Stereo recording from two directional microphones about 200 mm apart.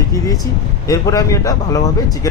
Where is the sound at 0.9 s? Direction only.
15° left (ahead or behind).